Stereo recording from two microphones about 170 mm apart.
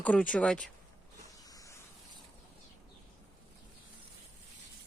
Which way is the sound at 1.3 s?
20° left (ahead or behind).